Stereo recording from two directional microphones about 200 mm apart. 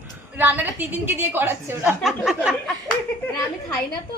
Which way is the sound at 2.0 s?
Centre (ahead or behind).